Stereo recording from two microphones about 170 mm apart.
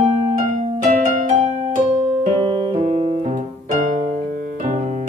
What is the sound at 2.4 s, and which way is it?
Piano, 30° right (ahead or behind).